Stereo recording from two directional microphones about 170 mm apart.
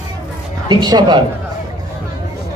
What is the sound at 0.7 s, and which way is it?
Speech, 25° right (ahead or behind).